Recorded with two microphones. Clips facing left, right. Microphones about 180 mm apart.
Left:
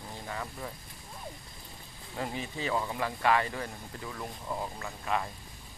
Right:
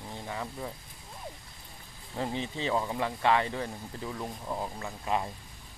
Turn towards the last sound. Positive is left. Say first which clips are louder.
# right 1 dB
turn(degrees=-10)  # may be behind; listen again after turning